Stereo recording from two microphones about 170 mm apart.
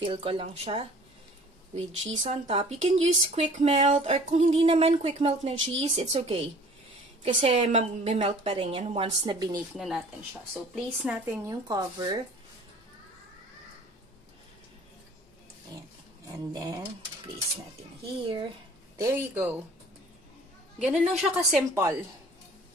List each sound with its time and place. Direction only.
0.0 s speech: 30° right (ahead or behind)
1.9 s speech: 40° right (ahead or behind)
9.2 s speech: 25° right (ahead or behind)
9.8 s speech: 5° right (ahead or behind)
11.4 s speech: 20° right (ahead or behind)
16.3 s speech: 25° right (ahead or behind)
18.9 s a woman's voice: 15° right (ahead or behind)
20.8 s a woman's voice: 5° right (ahead or behind)